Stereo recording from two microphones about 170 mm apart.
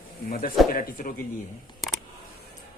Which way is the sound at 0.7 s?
55° left (ahead or behind).